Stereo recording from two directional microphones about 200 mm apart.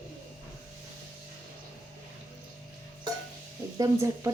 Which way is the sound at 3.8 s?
15° right (ahead or behind).